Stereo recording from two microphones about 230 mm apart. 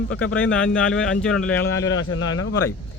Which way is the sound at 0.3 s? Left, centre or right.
Centre.